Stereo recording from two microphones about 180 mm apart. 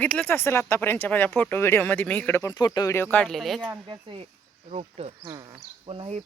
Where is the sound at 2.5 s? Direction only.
20° left (ahead or behind); by 3.7 s centre (ahead or behind).